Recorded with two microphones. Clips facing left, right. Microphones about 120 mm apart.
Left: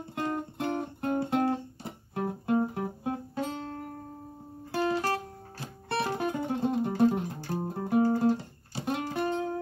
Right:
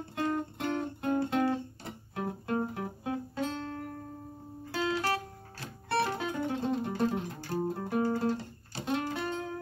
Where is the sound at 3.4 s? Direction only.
10° left (ahead or behind).